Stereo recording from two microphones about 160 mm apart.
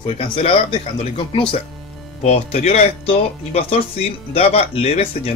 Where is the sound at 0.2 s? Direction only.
35° left (ahead or behind).